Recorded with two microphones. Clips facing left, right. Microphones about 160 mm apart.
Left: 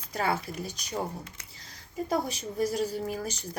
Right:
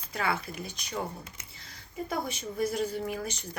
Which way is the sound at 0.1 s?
40° left (ahead or behind).